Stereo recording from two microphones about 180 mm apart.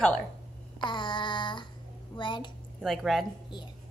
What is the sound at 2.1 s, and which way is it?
Speech, 25° left (ahead or behind).